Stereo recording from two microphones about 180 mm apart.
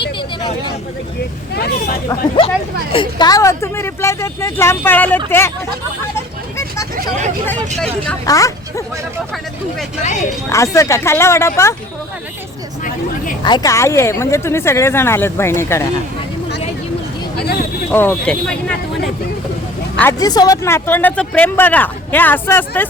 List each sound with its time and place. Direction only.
0.2 s a sound: 25° left (ahead or behind)
1.5 s speech: 65° left (ahead or behind)
2.0 s speech: 25° left (ahead or behind); by 5.5 s 10° left (ahead or behind)
8.2 s a woman's voice: 20° left (ahead or behind)
10.5 s speech: 15° left (ahead or behind)
13.4 s speech: 20° left (ahead or behind)
17.9 s speech: 10° left (ahead or behind)
20.0 s speech: 15° left (ahead or behind)